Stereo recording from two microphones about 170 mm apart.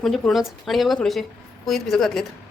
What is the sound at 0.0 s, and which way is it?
Speech, centre (ahead or behind).